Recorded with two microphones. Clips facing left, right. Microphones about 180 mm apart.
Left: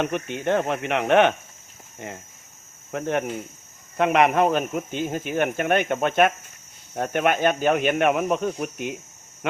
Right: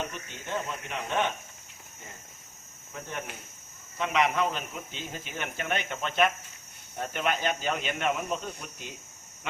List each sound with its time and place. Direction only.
0.0 s speech: 65° left (ahead or behind)
3.9 s speech: 60° left (ahead or behind)